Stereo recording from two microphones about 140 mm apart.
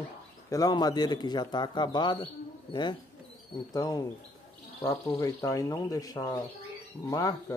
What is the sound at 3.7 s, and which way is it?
Speech, 25° left (ahead or behind).